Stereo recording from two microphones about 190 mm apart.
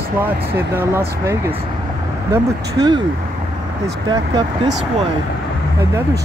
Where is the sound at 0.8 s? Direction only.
15° right (ahead or behind).